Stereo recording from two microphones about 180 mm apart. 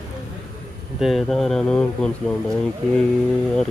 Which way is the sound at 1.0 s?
Centre (ahead or behind).